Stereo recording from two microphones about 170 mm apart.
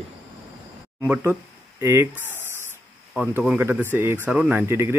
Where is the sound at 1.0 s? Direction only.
10° right (ahead or behind).